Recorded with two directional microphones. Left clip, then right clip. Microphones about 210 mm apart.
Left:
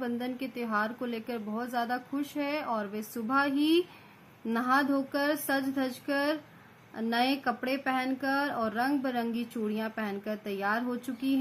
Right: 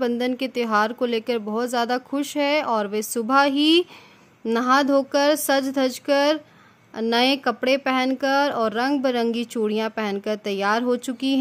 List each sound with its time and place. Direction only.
0.0 s a woman's voice: 55° right (ahead or behind)